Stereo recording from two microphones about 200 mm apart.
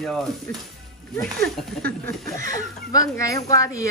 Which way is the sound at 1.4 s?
50° right (ahead or behind).